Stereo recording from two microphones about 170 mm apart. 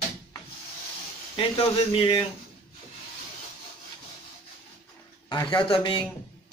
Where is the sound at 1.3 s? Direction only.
30° left (ahead or behind).